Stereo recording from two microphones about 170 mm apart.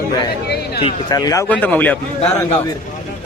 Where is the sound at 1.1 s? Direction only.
20° left (ahead or behind).